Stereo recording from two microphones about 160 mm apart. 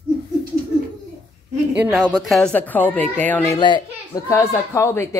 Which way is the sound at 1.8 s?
5° right (ahead or behind).